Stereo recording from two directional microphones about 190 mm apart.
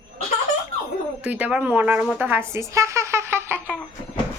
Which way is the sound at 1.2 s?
10° right (ahead or behind).